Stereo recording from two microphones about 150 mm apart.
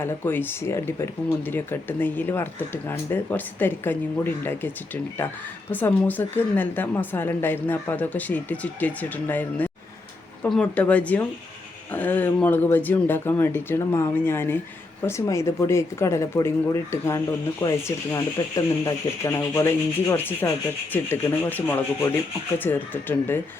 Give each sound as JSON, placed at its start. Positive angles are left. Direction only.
{"t": 0.0, "sound": "a woman's voice", "side_deg": 15}
{"t": 5.7, "sound": "a woman's voice", "side_deg": 10}